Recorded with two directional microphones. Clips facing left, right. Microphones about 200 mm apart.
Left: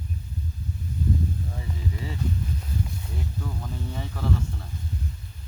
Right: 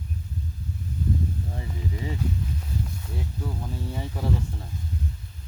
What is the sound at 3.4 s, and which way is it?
Speech, 15° right (ahead or behind).